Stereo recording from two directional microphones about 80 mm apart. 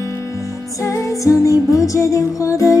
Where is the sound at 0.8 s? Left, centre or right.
Left.